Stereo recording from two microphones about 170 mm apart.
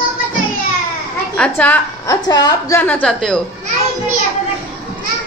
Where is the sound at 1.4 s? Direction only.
10° left (ahead or behind).